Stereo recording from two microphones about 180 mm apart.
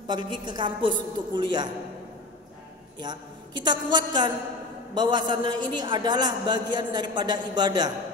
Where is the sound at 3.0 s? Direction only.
25° right (ahead or behind).